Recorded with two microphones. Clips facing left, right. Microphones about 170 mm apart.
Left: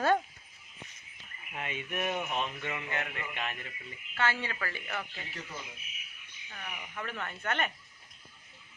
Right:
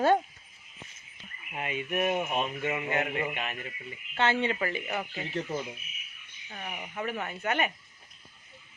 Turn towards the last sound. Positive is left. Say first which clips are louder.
# right 4 dB
turn(degrees=-10)  # may be behind; listen again after turning